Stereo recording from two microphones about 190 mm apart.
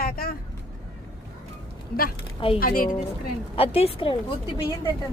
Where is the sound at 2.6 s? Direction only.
50° left (ahead or behind).